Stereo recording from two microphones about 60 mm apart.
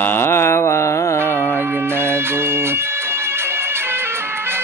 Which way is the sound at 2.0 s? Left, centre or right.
Right.